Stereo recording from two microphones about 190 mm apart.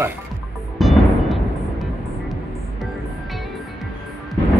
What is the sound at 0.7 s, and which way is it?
Music, centre (ahead or behind).